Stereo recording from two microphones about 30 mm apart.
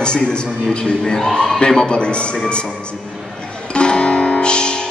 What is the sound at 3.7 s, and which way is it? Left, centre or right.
Music, left.